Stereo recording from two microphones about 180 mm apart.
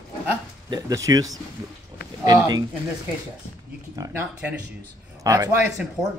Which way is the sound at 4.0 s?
10° right (ahead or behind).